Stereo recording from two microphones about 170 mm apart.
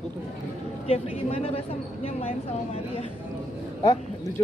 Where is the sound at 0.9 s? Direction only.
35° left (ahead or behind).